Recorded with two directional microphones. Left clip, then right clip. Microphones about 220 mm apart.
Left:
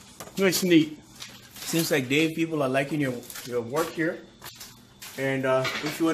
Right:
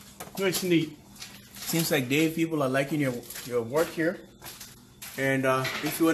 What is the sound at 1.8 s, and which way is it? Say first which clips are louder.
Speech: left 1 dB; 5° left (ahead or behind).